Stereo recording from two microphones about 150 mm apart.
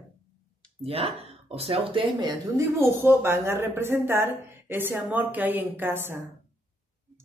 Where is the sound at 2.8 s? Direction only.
15° right (ahead or behind).